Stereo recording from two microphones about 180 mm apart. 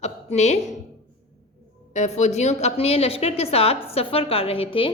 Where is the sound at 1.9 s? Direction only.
40° left (ahead or behind).